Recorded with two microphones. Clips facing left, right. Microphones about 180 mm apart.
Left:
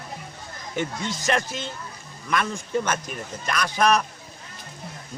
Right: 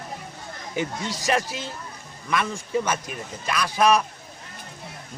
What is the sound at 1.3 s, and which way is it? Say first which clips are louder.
Speech: right 1 dB; 10° right (ahead or behind).